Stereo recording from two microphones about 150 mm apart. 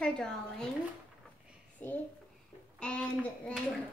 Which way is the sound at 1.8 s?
15° left (ahead or behind).